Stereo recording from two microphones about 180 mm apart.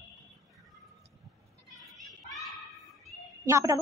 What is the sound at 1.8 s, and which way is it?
Children playing, centre (ahead or behind).